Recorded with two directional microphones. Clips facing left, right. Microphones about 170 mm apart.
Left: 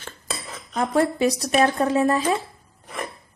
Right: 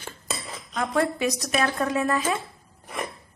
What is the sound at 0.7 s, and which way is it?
A woman's voice, 30° left (ahead or behind).